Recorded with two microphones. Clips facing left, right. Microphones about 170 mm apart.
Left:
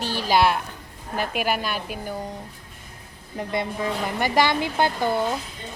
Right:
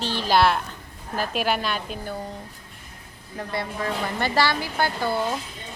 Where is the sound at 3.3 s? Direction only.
20° left (ahead or behind).